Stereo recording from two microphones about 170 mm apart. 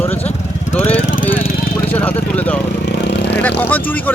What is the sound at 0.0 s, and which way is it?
Vehicle, 10° left (ahead or behind).